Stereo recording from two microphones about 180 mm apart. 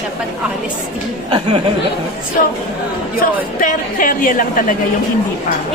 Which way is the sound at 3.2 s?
45° left (ahead or behind).